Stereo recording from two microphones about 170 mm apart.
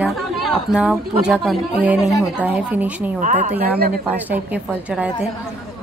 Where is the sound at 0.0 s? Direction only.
Centre (ahead or behind).